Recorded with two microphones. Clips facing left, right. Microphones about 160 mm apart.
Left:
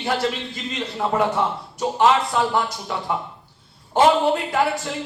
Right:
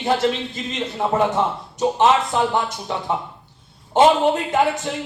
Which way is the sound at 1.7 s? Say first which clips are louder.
Right 1 dB; 20° right (ahead or behind).